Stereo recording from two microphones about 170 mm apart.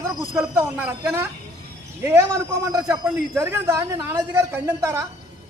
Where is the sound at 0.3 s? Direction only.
10° right (ahead or behind).